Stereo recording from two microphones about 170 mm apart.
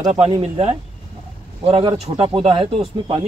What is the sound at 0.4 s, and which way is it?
Speech, 40° right (ahead or behind).